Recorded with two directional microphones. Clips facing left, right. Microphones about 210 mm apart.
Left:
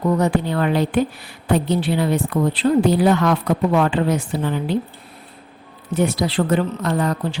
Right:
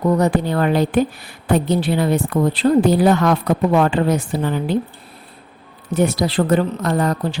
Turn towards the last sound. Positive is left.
turn(degrees=-45)  # may be behind; listen again after turning